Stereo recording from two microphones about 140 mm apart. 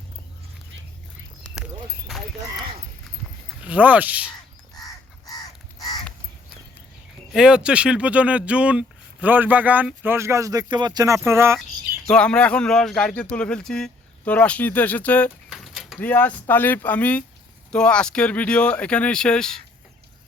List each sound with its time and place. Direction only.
3.6 s speech: 10° right (ahead or behind)
4.7 s fowl: 25° left (ahead or behind)
7.3 s speech: 5° right (ahead or behind); by 11.2 s 25° right (ahead or behind)
11.3 s cricket: 20° right (ahead or behind)
12.0 s speech: 5° left (ahead or behind)
15.4 s a sound: centre (ahead or behind)
16.0 s speech: 10° left (ahead or behind)